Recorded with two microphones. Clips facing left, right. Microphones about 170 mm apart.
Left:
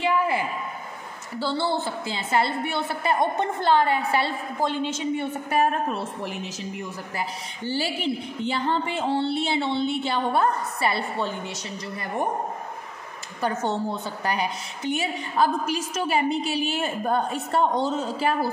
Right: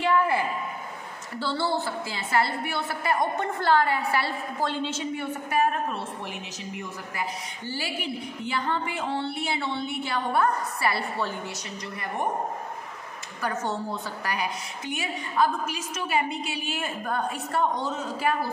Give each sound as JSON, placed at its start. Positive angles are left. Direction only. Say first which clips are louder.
{"t": 0.0, "sound": "a sound", "louder": "even", "side_deg": 20}
{"t": 1.4, "sound": "a woman's voice", "louder": "left 2 dB", "side_deg": 20}
{"t": 5.1, "sound": "a woman's voice", "louder": "left 3 dB", "side_deg": 25}
{"t": 7.2, "sound": "a woman's voice", "louder": "left 1 dB", "side_deg": 30}
{"t": 13.4, "sound": "a woman's voice", "louder": "left 4 dB", "side_deg": 25}